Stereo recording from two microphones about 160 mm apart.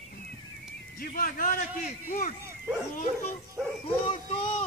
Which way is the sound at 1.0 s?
65° left (ahead or behind).